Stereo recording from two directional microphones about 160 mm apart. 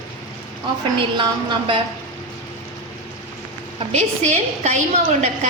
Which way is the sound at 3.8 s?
45° right (ahead or behind).